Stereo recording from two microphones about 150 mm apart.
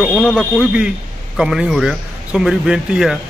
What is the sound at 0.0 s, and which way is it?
A man's voice, centre (ahead or behind).